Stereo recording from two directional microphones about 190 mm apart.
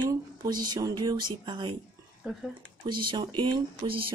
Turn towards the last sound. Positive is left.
turn(degrees=-25)  # may be behind; listen again after turning